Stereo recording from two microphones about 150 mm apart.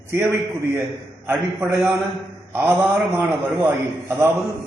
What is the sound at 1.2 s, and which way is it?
A man's voice, 15° right (ahead or behind).